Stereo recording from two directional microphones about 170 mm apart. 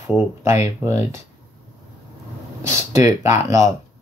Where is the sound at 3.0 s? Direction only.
45° left (ahead or behind).